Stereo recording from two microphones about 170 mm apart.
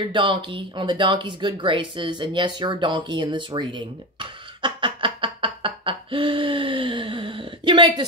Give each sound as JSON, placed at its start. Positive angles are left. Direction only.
{"t": 0.1, "sound": "speech", "side_deg": -30}